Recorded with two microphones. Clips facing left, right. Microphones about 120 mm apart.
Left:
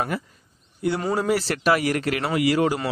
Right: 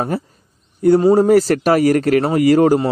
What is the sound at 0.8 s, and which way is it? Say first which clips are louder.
Speech: right 12 dB; 40° right (ahead or behind).